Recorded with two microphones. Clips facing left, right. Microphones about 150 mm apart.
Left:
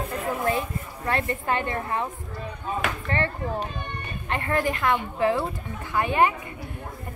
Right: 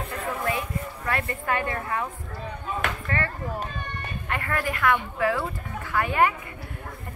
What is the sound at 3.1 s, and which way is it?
Speech, 25° left (ahead or behind).